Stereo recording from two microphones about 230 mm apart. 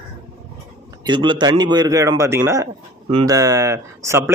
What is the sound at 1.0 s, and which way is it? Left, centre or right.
Speech, centre.